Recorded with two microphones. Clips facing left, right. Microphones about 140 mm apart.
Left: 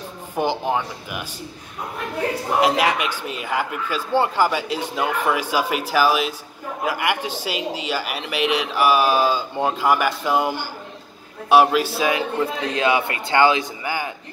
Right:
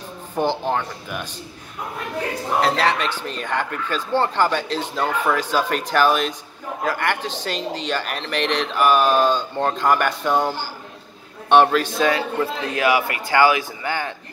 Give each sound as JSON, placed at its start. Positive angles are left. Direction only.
{"t": 0.4, "sound": "speech", "side_deg": 10}
{"t": 2.6, "sound": "a man's voice", "side_deg": 15}
{"t": 13.8, "sound": "speech", "side_deg": 10}